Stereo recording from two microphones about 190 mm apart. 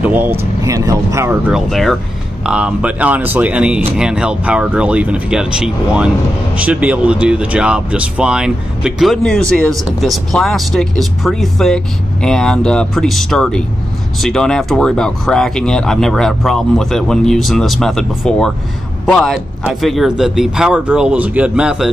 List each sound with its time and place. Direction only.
0.0 s speech: 10° right (ahead or behind)
1.5 s speech: centre (ahead or behind)